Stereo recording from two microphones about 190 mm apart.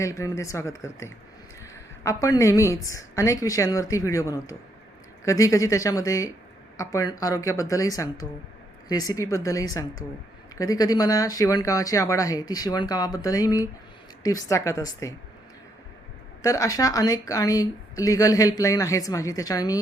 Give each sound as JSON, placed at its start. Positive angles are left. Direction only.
{"t": 0.0, "sound": "a woman's voice", "side_deg": 15}
{"t": 2.2, "sound": "a woman's voice", "side_deg": 15}
{"t": 16.4, "sound": "speech", "side_deg": 20}